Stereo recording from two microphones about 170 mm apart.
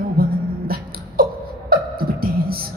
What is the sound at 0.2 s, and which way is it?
Music, 60° right (ahead or behind).